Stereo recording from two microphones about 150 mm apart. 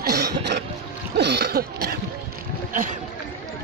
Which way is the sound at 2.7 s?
60° right (ahead or behind).